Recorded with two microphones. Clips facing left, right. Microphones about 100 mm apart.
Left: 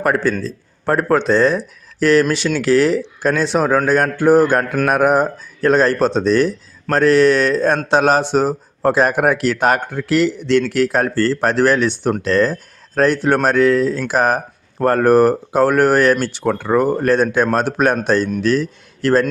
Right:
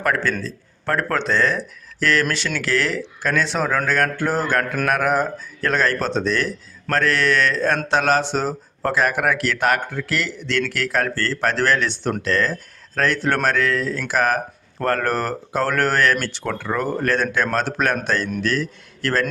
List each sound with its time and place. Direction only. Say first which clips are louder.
0.0 s a man's voice: left 5 dB; 15° left (ahead or behind)